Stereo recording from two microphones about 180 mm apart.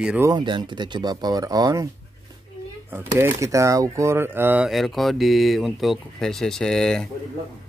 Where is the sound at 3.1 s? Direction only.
15° right (ahead or behind); by 7.1 s 5° left (ahead or behind).